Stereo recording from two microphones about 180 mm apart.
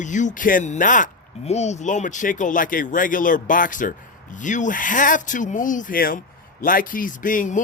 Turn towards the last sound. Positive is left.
turn(degrees=45)  # may be behind; listen again after turning